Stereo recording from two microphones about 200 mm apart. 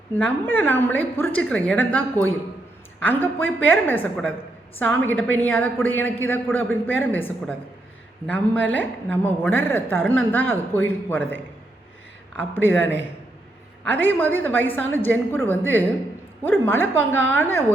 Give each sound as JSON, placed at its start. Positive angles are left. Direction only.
{"t": 0.3, "sound": "a woman's voice", "side_deg": 10}
{"t": 12.6, "sound": "a woman's voice", "side_deg": 10}